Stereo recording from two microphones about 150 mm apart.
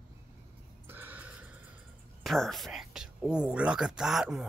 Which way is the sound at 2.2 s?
Centre (ahead or behind).